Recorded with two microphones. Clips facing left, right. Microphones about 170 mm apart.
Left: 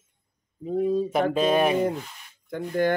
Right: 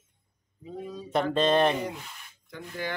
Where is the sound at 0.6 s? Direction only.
50° left (ahead or behind).